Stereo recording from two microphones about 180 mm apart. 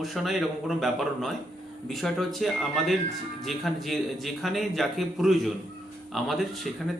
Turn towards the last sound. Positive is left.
turn(degrees=0)  # may be behind; listen again after turning